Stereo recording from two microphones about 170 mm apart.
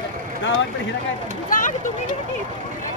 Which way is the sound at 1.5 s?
50° left (ahead or behind).